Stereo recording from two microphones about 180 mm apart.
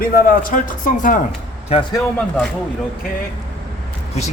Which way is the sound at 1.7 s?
35° left (ahead or behind).